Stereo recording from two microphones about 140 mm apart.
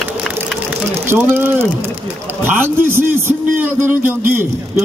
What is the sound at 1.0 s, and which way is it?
Music, 15° right (ahead or behind).